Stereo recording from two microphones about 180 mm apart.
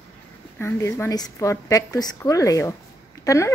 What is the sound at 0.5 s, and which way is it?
A woman's voice, 15° left (ahead or behind).